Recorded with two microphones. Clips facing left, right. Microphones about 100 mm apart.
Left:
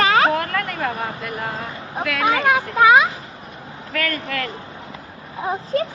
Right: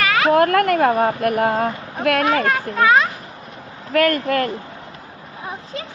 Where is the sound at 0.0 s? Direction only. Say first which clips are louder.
Left 1 dB; 30° left (ahead or behind).